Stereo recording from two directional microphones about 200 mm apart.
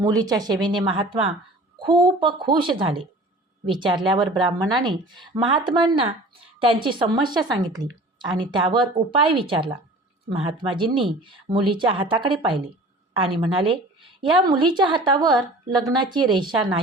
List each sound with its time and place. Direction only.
0.0 s speech: 20° right (ahead or behind)